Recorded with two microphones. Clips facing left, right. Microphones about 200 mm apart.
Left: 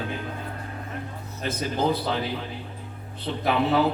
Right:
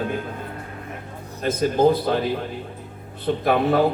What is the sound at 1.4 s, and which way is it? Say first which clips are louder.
A man's voice: right 7 dB; 50° right (ahead or behind).